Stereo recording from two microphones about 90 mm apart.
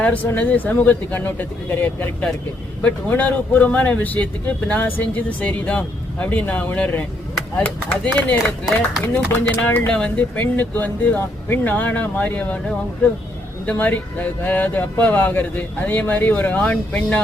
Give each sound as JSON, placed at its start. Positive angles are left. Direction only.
{"t": 0.0, "sound": "speech", "side_deg": 20}
{"t": 13.7, "sound": "speech", "side_deg": 20}